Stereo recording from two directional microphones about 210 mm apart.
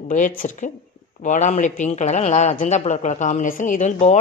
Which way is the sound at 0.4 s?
35° left (ahead or behind).